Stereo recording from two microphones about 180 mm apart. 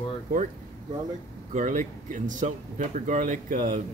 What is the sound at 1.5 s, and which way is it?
Speech, 45° right (ahead or behind).